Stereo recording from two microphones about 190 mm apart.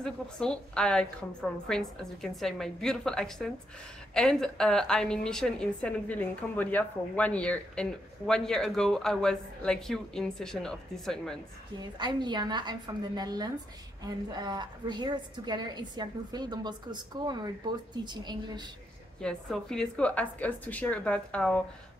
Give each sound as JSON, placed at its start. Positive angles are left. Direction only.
{"t": 0.0, "sound": "a woman's voice", "side_deg": 5}
{"t": 11.8, "sound": "a woman's voice", "side_deg": -25}
{"t": 19.2, "sound": "a woman's voice", "side_deg": 5}